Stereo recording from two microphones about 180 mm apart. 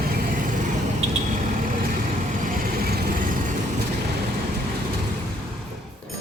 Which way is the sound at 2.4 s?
50° right (ahead or behind).